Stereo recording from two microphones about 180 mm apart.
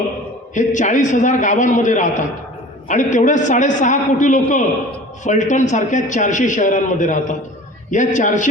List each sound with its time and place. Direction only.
0.5 s a man's voice: 45° left (ahead or behind)